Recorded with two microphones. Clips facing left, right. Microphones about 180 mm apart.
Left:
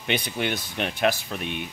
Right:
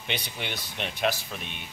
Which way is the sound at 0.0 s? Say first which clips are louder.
Left 8 dB; 55° left (ahead or behind).